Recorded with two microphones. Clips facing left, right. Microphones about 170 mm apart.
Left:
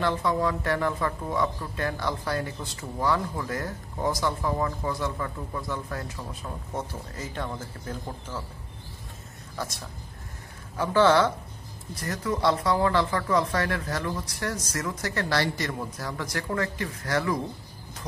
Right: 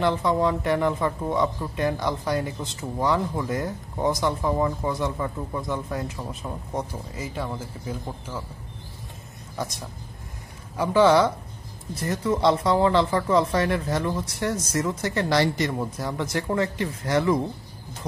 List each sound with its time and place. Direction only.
0.0 s speech: 20° right (ahead or behind)
9.6 s a woman's voice: 15° right (ahead or behind)
11.9 s speech: 25° right (ahead or behind)